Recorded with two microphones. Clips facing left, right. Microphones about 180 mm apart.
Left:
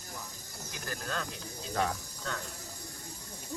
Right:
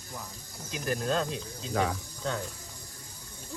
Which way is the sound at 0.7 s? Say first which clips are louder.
Right 9 dB; 20° right (ahead or behind).